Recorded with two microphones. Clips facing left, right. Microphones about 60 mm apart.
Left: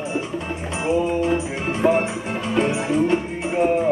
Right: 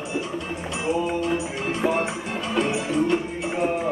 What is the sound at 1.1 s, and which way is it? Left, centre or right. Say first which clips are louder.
Music: left 4 dB; left.